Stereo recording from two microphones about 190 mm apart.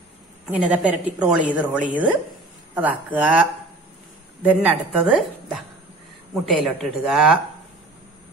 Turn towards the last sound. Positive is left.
turn(degrees=0)  # may be behind; listen again after turning